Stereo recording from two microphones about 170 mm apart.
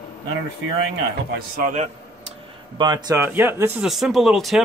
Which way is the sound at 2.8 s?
25° right (ahead or behind).